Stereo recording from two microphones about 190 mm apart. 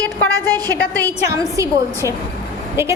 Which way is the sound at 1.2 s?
15° right (ahead or behind).